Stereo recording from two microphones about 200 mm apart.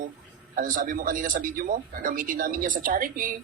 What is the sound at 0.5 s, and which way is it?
Speech, 40° right (ahead or behind).